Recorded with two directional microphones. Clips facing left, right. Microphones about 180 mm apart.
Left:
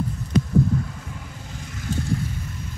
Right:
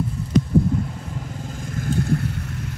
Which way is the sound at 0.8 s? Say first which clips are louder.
Right 5 dB; 35° right (ahead or behind).